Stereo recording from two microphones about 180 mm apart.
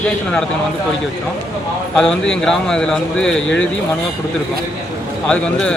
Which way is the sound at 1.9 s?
5° left (ahead or behind).